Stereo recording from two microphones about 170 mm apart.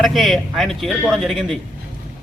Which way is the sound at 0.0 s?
Centre (ahead or behind).